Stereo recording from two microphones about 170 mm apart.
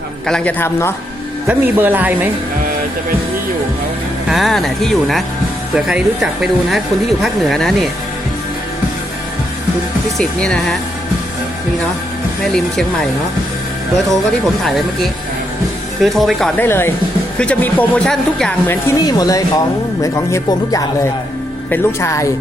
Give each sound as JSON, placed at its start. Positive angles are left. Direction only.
{"t": 0.3, "sound": "a woman's voice", "side_deg": 5}
{"t": 1.5, "sound": "speech", "side_deg": -10}
{"t": 4.3, "sound": "speech", "side_deg": 0}
{"t": 10.2, "sound": "speech", "side_deg": 5}
{"t": 12.5, "sound": "speech", "side_deg": 5}
{"t": 14.1, "sound": "speech", "side_deg": 0}
{"t": 16.6, "sound": "a woman's voice", "side_deg": 15}
{"t": 18.7, "sound": "a woman's voice", "side_deg": 25}